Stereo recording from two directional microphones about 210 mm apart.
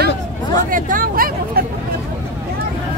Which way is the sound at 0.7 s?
40° right (ahead or behind).